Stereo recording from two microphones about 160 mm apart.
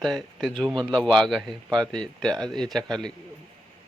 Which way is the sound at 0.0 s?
Centre (ahead or behind).